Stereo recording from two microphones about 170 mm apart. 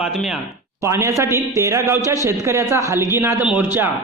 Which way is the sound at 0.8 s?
15° right (ahead or behind).